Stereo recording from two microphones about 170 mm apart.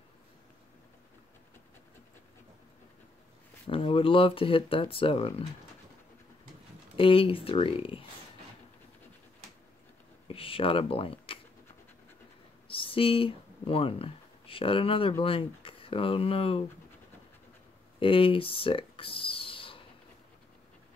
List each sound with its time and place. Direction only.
3.6 s speech: 35° left (ahead or behind)
7.0 s speech: 30° left (ahead or behind)
10.2 s speech: 30° left (ahead or behind)
12.6 s speech: 30° left (ahead or behind)
17.9 s a sound: 30° left (ahead or behind)